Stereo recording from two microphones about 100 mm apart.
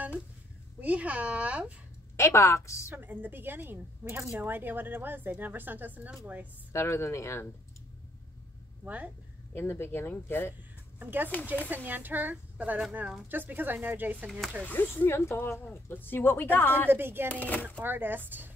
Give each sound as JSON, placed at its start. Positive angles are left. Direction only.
{"t": 0.7, "sound": "speech", "side_deg": -15}
{"t": 2.1, "sound": "speech", "side_deg": 30}
{"t": 2.9, "sound": "speech", "side_deg": -20}
{"t": 6.7, "sound": "speech", "side_deg": 25}
{"t": 8.8, "sound": "speech", "side_deg": -15}
{"t": 9.5, "sound": "speech", "side_deg": 25}
{"t": 11.0, "sound": "speech", "side_deg": -20}
{"t": 14.6, "sound": "speech", "side_deg": 20}
{"t": 16.9, "sound": "speech", "side_deg": -20}
{"t": 17.3, "sound": "speech", "side_deg": 15}
{"t": 17.8, "sound": "speech", "side_deg": -20}